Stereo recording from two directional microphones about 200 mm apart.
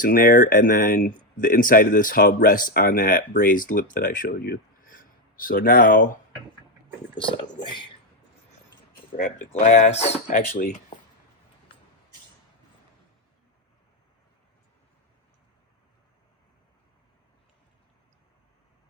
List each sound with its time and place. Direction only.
0.0 s speech: 45° left (ahead or behind)
9.1 s speech: 40° left (ahead or behind)